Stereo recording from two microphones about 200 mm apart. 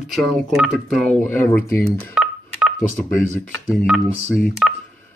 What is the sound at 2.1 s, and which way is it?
Telephone dialing, 5° right (ahead or behind).